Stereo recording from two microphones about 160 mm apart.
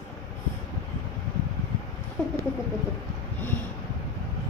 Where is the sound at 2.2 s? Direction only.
5° left (ahead or behind).